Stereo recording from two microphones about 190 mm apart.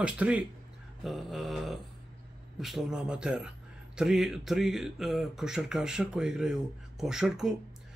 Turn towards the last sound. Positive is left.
turn(degrees=0)  # may be behind; listen again after turning